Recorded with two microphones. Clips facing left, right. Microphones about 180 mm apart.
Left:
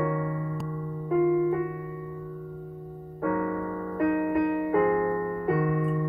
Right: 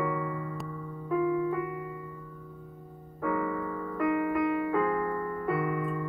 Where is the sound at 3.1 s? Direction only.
40° left (ahead or behind).